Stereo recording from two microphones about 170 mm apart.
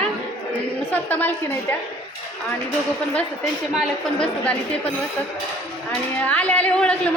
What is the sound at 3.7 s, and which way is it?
A woman's voice, 5° left (ahead or behind).